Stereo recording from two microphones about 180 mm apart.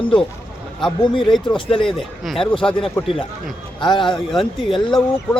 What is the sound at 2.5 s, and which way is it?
A man's voice, 30° left (ahead or behind).